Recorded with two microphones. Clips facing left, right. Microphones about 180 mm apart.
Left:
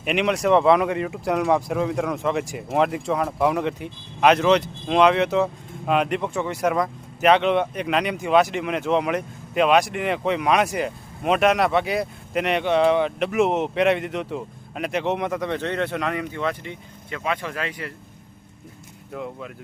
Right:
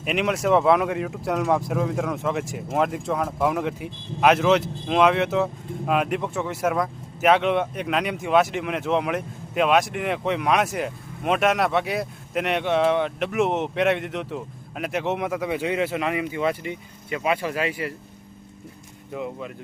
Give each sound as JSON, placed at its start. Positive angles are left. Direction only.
{"t": 0.0, "sound": "speech", "side_deg": 0}
{"t": 19.1, "sound": "speech", "side_deg": 0}